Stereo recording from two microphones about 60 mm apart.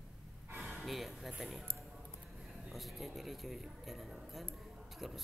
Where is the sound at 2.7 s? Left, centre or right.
Centre.